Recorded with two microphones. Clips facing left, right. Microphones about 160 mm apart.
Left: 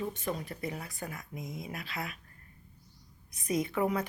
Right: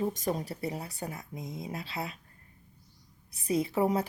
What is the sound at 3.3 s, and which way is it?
Speech, 30° right (ahead or behind).